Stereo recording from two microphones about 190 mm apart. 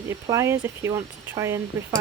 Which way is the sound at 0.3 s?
15° right (ahead or behind).